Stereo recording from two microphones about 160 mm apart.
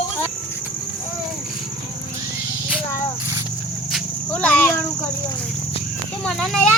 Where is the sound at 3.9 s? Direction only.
5° left (ahead or behind).